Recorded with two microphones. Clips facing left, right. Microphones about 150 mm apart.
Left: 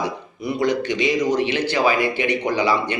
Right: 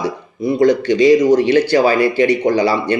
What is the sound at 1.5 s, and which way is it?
A man's voice, 35° right (ahead or behind).